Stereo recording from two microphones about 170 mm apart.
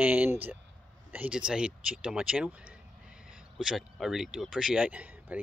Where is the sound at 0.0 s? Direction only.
10° right (ahead or behind).